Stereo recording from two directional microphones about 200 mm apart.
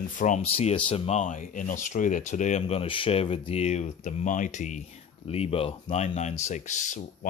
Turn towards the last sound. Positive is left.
turn(degrees=35)  # may be behind; listen again after turning